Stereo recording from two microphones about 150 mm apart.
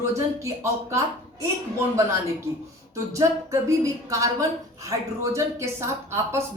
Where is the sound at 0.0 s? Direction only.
20° right (ahead or behind).